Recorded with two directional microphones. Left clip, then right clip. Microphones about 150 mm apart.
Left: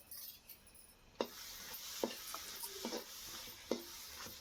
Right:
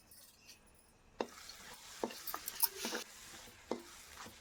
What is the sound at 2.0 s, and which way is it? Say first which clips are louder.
Stir: even; 15° right (ahead or behind).